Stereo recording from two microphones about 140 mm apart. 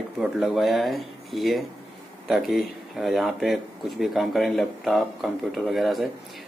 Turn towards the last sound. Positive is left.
turn(degrees=0)  # may be behind; listen again after turning